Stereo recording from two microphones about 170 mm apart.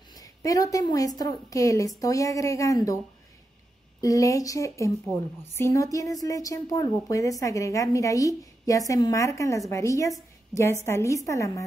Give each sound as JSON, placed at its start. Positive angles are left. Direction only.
{"t": 0.1, "sound": "a woman's voice", "side_deg": 20}
{"t": 4.0, "sound": "a woman's voice", "side_deg": 20}